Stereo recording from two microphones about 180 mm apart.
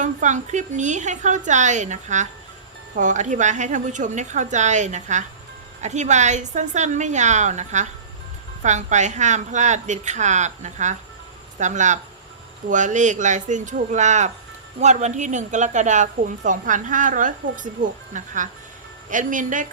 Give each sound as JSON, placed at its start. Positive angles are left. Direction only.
{"t": 0.0, "sound": "a woman's voice", "side_deg": -45}